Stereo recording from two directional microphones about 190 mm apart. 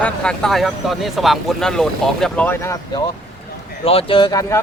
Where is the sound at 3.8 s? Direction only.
30° left (ahead or behind).